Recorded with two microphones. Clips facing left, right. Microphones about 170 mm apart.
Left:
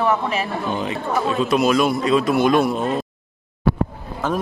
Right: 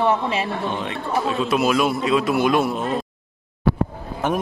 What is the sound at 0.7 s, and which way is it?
A man's voice, centre (ahead or behind).